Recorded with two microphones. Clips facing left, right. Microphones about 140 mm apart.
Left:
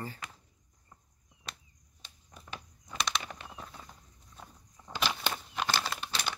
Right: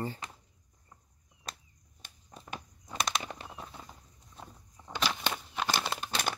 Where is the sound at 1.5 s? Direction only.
40° right (ahead or behind).